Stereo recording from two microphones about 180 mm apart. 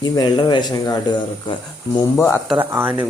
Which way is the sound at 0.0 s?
25° left (ahead or behind).